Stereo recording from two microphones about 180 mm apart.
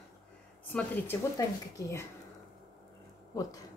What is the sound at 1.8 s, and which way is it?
Speech, 15° left (ahead or behind).